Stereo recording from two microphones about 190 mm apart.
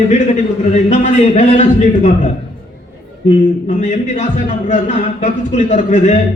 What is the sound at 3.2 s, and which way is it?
A man's voice, 40° left (ahead or behind).